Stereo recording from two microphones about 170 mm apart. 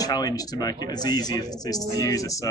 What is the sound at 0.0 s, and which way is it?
Speech, 20° left (ahead or behind).